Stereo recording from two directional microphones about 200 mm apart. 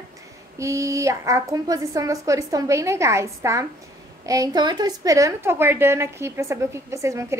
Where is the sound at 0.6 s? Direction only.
15° right (ahead or behind).